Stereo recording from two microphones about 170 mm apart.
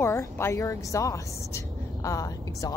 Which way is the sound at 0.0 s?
15° left (ahead or behind).